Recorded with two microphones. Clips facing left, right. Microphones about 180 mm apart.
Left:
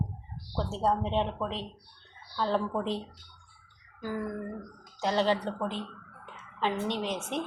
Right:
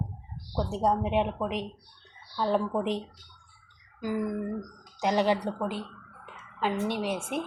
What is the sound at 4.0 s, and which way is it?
Speech, 15° right (ahead or behind).